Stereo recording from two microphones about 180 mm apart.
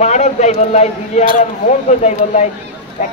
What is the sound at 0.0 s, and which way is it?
A man's voice, 40° left (ahead or behind).